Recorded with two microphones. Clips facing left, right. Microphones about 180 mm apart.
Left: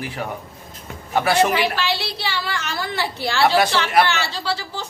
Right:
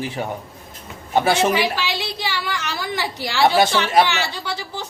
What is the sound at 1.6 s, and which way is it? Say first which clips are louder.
A woman's voice: left 1 dB; 15° right (ahead or behind).